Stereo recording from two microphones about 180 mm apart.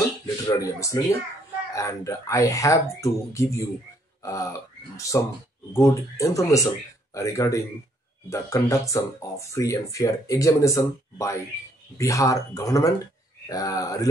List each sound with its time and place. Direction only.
0.5 s speech: 15° left (ahead or behind)